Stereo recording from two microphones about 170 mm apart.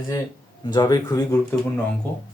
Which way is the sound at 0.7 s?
25° left (ahead or behind).